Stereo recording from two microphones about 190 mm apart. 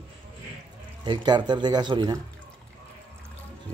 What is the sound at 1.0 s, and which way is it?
Speech, 25° right (ahead or behind).